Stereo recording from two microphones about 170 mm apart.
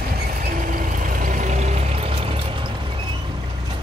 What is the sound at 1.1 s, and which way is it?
Vehicle, 50° right (ahead or behind).